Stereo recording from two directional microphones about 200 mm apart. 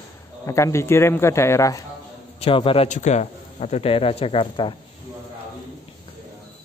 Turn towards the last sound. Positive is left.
turn(degrees=25)  # may be behind; listen again after turning